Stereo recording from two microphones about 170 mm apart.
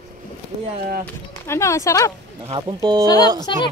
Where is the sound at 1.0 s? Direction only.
15° left (ahead or behind).